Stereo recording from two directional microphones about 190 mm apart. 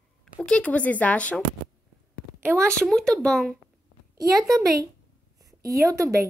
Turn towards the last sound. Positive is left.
turn(degrees=-15)  # may be behind; listen again after turning